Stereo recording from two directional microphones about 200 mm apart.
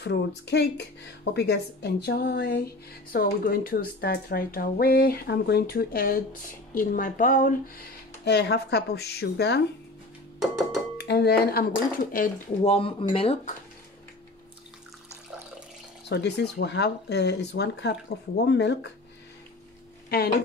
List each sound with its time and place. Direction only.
0.0 s speech: 55° left (ahead or behind)
8.3 s speech: 55° left (ahead or behind)
11.0 s speech: 55° left (ahead or behind)
12.6 s speech: 25° left (ahead or behind)
16.1 s speech: 55° left (ahead or behind)
20.1 s a woman's voice: 50° left (ahead or behind)